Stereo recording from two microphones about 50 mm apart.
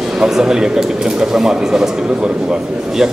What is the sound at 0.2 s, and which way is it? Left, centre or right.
Speech, centre.